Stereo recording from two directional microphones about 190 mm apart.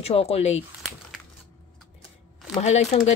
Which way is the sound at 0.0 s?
30° left (ahead or behind).